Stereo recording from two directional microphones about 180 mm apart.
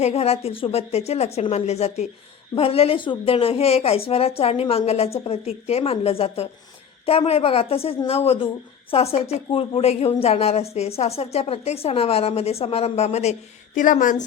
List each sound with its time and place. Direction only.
0.0 s a woman's voice: 35° left (ahead or behind)